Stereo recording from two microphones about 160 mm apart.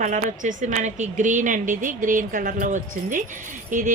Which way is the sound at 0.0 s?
55° right (ahead or behind).